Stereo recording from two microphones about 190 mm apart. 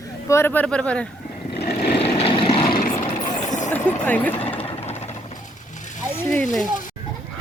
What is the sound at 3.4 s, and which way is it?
Vehicle, 40° left (ahead or behind).